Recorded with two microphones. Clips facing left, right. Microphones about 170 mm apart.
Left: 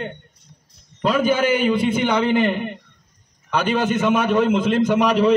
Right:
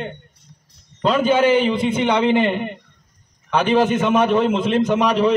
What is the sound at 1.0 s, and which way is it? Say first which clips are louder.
A man's voice: right 2 dB; 5° left (ahead or behind).